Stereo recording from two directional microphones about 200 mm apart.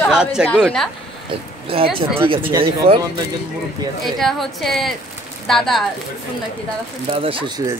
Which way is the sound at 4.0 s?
Centre (ahead or behind).